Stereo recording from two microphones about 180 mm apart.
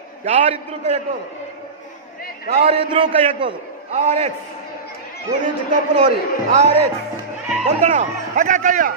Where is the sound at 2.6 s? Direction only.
30° right (ahead or behind).